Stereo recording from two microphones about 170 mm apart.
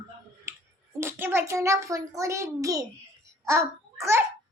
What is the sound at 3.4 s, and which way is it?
Speech, 15° right (ahead or behind).